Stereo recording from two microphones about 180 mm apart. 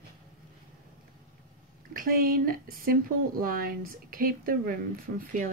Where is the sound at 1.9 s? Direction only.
50° right (ahead or behind).